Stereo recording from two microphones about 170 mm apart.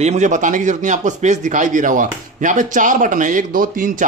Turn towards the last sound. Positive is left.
turn(degrees=-55)  # may be behind; listen again after turning